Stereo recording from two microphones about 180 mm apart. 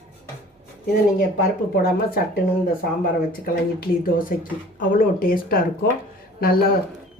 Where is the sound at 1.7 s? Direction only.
55° left (ahead or behind).